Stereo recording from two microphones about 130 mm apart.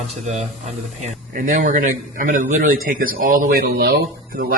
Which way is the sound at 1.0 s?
85° right.